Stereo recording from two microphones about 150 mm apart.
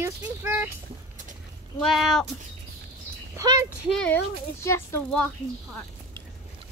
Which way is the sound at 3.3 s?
25° right (ahead or behind).